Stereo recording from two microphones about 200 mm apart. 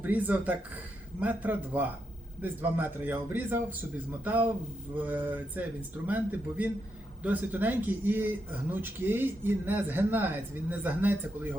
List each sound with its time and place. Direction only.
0.0 s speech: 10° right (ahead or behind)